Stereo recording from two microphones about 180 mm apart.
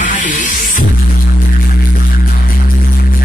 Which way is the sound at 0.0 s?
45° left (ahead or behind).